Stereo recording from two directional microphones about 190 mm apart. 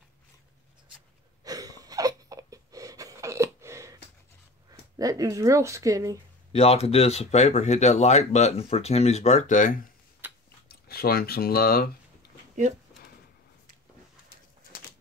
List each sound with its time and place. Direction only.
1.4 s wheeze: 20° right (ahead or behind)
4.6 s speech: 20° right (ahead or behind)
6.5 s speech: 30° left (ahead or behind)
10.2 s a sound: 10° right (ahead or behind)
10.7 s speech: 55° left (ahead or behind)